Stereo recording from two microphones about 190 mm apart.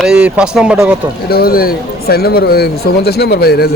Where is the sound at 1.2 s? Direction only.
55° left (ahead or behind).